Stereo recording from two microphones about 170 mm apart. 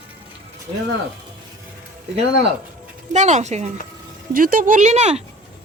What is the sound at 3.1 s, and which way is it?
Speech, 45° right (ahead or behind).